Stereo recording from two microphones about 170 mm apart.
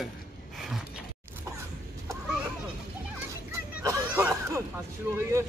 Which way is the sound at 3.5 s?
15° right (ahead or behind).